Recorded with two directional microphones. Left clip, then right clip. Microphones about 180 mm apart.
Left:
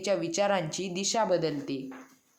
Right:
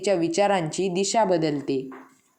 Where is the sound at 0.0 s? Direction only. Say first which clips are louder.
Right 6 dB; 15° right (ahead or behind).